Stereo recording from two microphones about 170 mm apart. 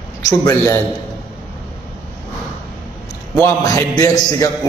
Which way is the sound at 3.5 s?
15° left (ahead or behind).